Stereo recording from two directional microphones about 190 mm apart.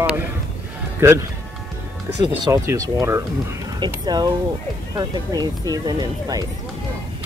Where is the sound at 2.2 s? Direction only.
20° right (ahead or behind).